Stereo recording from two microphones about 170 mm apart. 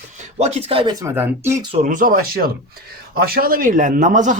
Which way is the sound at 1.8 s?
50° right (ahead or behind).